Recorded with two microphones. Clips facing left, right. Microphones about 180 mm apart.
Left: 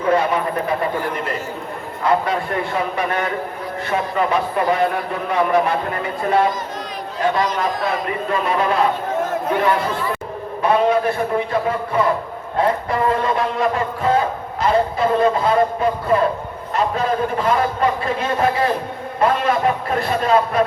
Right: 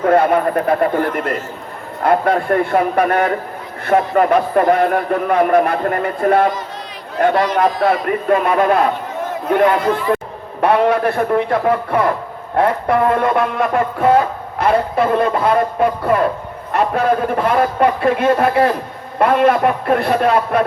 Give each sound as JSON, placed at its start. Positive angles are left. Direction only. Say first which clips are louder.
{"t": 0.0, "sound": "a man's voice", "louder": "right 5 dB", "side_deg": -55}
{"t": 10.6, "sound": "a man's voice", "louder": "right 3 dB", "side_deg": -65}